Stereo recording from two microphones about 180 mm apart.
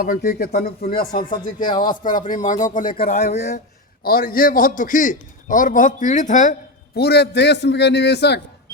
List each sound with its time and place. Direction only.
0.0 s a man's voice: 55° left (ahead or behind)
3.2 s speech: 40° left (ahead or behind)
4.0 s a man's voice: 55° left (ahead or behind)
6.9 s a man's voice: 65° left (ahead or behind)